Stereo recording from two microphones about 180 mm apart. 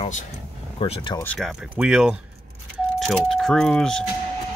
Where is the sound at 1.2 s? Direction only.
5° left (ahead or behind).